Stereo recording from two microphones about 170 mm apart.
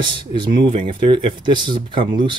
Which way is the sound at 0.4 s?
30° right (ahead or behind).